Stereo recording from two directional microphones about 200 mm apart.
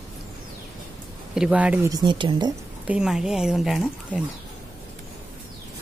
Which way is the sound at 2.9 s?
5° right (ahead or behind).